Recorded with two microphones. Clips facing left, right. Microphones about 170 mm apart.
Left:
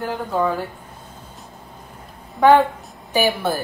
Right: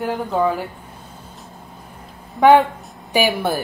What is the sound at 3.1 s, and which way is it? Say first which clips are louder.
Speech: right 1 dB; 10° right (ahead or behind).